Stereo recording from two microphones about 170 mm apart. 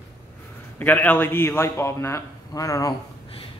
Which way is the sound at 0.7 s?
10° left (ahead or behind).